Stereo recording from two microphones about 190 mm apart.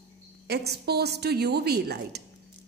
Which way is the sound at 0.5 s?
60° right (ahead or behind).